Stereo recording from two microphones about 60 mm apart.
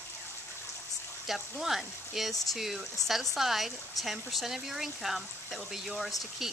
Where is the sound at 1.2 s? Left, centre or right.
Centre.